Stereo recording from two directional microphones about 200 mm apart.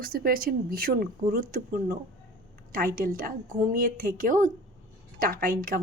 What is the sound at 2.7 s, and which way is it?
A woman's voice, 45° right (ahead or behind).